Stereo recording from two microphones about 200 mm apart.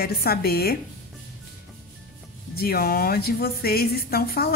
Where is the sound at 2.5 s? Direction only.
50° left (ahead or behind).